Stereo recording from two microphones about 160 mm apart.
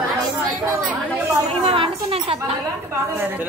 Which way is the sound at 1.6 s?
35° right (ahead or behind).